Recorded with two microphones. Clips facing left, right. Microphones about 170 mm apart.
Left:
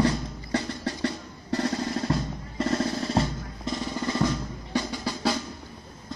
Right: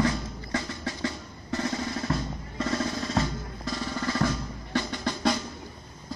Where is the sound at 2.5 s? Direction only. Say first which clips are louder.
Left 3 dB; 30° left (ahead or behind).